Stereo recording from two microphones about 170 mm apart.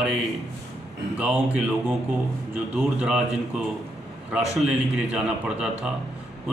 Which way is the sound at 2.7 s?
5° right (ahead or behind).